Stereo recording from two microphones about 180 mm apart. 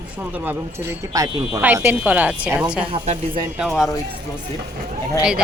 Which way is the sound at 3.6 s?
Centre (ahead or behind).